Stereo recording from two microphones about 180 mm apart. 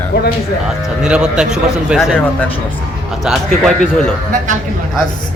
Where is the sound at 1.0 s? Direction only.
5° right (ahead or behind).